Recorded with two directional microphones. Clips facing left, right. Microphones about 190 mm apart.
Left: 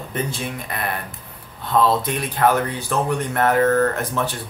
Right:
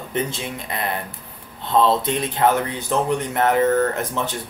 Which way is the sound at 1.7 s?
25° right (ahead or behind).